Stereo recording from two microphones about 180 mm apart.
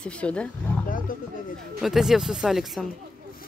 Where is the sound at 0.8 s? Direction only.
50° left (ahead or behind).